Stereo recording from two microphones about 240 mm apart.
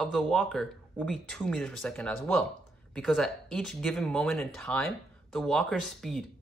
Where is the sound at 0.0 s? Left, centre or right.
Centre.